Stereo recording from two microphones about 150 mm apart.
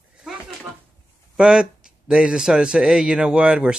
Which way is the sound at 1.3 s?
5° right (ahead or behind).